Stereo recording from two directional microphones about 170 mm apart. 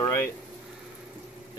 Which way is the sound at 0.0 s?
15° left (ahead or behind).